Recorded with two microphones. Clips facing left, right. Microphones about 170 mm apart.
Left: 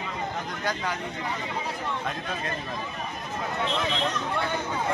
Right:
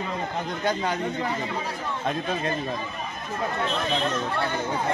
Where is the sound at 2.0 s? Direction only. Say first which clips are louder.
Right 5 dB; 30° right (ahead or behind).